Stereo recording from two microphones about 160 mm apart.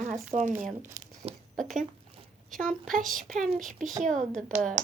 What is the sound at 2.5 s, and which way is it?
Speech, 60° right (ahead or behind).